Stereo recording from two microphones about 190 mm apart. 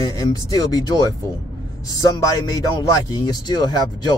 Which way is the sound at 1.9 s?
20° left (ahead or behind).